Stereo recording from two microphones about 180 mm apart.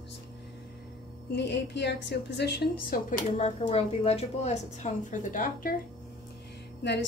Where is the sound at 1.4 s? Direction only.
70° left (ahead or behind).